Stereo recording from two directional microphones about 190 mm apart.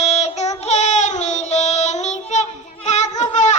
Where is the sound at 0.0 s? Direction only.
35° left (ahead or behind).